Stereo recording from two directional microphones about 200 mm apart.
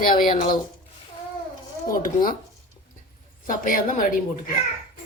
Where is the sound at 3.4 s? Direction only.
45° left (ahead or behind).